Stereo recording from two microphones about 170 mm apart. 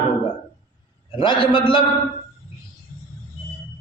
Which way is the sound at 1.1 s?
30° left (ahead or behind).